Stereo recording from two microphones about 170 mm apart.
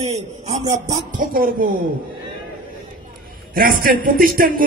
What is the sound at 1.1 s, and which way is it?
Speech, 55° right (ahead or behind).